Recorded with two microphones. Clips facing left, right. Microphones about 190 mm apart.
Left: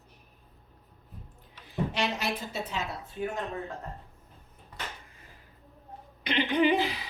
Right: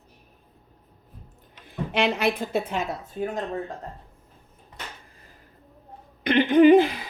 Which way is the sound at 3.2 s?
35° right (ahead or behind).